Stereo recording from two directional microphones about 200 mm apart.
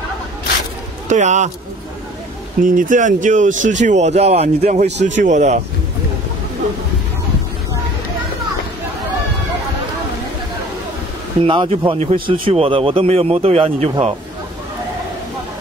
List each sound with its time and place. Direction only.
1.0 s speech: 35° right (ahead or behind)
2.6 s speech: 40° right (ahead or behind)
11.4 s speech: 25° right (ahead or behind)